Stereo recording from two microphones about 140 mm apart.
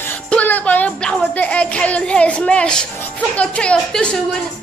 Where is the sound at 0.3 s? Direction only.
10° left (ahead or behind).